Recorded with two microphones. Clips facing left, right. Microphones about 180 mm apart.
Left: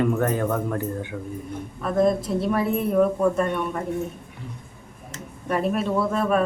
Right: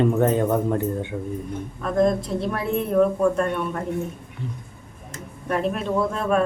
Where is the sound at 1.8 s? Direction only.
5° left (ahead or behind).